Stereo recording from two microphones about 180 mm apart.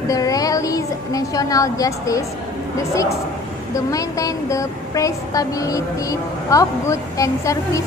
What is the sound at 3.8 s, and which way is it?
A woman's voice, 20° left (ahead or behind).